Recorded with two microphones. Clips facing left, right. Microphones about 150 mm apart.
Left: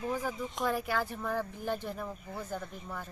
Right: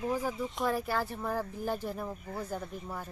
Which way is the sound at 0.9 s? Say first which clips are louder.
Even; 35° right (ahead or behind).